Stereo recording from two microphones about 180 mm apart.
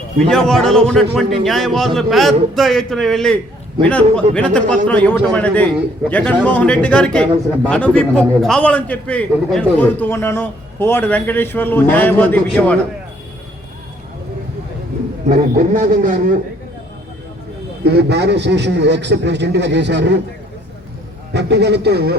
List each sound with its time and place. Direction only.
0.3 s a man's voice: 5° left (ahead or behind)
15.3 s speech: 50° right (ahead or behind)
17.8 s a man's voice: 70° right (ahead or behind)
21.3 s a man's voice: 70° right (ahead or behind)